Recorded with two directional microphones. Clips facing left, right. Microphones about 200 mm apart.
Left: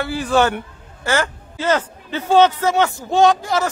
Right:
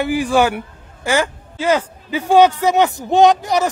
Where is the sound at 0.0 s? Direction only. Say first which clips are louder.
Right 2 dB; 15° right (ahead or behind).